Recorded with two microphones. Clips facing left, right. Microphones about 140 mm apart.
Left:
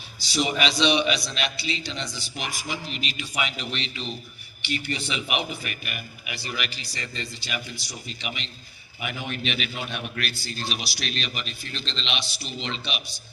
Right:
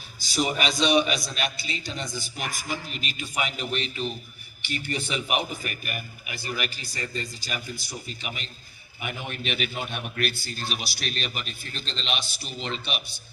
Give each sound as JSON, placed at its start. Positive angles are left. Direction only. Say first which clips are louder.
{"t": 0.3, "sound": "a man's voice", "louder": "left 1 dB", "side_deg": -45}